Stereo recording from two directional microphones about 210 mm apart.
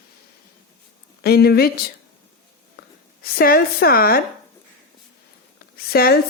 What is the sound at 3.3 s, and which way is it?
Speech, 45° left (ahead or behind).